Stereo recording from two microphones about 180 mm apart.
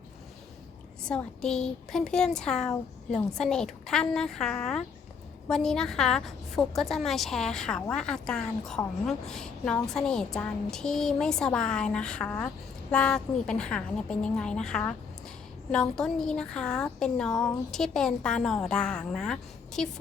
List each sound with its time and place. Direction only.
1.0 s a woman's voice: 5° left (ahead or behind)